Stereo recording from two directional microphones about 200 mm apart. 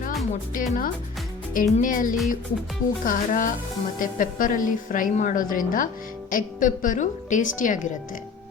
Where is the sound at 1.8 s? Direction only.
40° left (ahead or behind).